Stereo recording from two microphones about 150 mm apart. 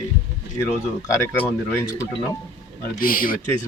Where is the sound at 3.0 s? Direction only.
65° left (ahead or behind).